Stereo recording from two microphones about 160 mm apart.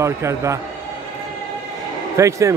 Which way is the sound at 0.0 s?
20° right (ahead or behind).